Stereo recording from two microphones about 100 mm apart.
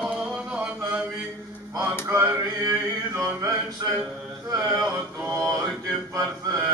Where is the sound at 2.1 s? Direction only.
25° right (ahead or behind).